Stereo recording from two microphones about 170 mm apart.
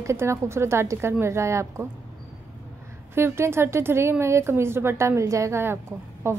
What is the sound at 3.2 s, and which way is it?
A woman's voice, 15° right (ahead or behind).